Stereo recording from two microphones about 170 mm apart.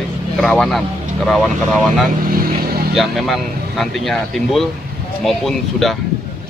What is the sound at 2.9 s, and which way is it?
Speech, centre (ahead or behind).